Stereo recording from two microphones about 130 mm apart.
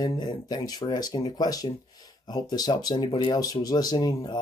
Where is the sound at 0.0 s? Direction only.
30° left (ahead or behind).